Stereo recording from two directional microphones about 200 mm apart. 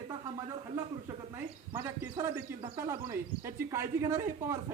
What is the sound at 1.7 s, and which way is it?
Speech, 15° right (ahead or behind).